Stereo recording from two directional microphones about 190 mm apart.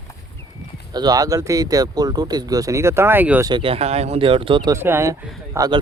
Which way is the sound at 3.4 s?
25° right (ahead or behind).